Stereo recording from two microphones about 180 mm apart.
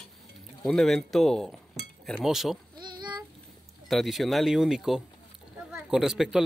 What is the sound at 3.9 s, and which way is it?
Speech, centre (ahead or behind).